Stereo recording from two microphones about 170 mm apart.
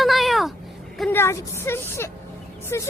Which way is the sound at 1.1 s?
15° left (ahead or behind).